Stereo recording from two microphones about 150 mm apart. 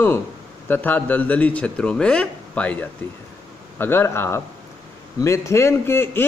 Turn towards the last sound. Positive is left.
turn(degrees=15)  # may be behind; listen again after turning